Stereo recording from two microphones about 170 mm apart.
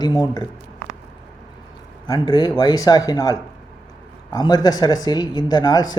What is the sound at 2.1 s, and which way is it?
Speech, 25° left (ahead or behind).